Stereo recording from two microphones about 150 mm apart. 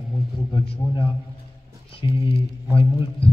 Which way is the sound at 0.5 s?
30° left (ahead or behind).